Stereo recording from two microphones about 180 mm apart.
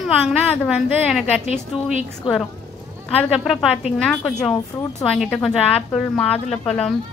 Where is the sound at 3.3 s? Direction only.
Centre (ahead or behind).